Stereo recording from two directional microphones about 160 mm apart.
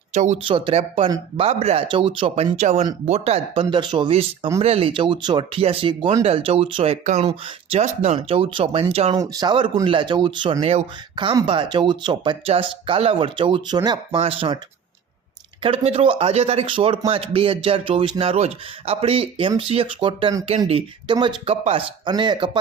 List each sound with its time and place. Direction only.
0.1 s speech: 45° right (ahead or behind)
0.4 s speech: 35° right (ahead or behind)
9.1 s speech: 25° right (ahead or behind)
10.6 s speech: 40° right (ahead or behind)
11.1 s speech: 30° right (ahead or behind)
15.6 s speech: 35° right (ahead or behind)